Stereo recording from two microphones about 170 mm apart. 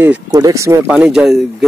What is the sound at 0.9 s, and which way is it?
Speech, 5° right (ahead or behind).